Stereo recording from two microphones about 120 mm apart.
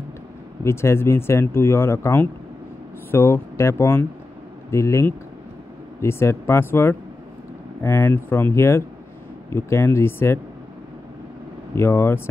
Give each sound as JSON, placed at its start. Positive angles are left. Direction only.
{"t": 0.7, "sound": "speech", "side_deg": 20}
{"t": 11.7, "sound": "speech", "side_deg": 20}